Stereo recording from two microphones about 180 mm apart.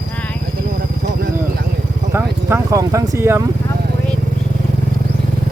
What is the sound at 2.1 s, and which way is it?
Speech, 15° right (ahead or behind).